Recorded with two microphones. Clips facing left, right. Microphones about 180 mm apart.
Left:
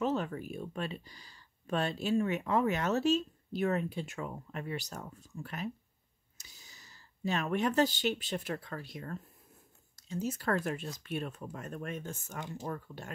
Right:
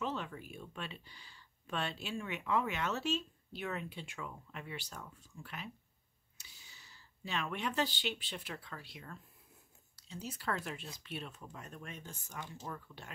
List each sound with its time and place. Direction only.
0.0 s speech: 45° left (ahead or behind)